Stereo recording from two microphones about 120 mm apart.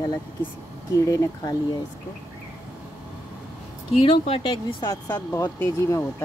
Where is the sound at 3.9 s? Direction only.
55° left (ahead or behind); by 5.4 s 35° left (ahead or behind).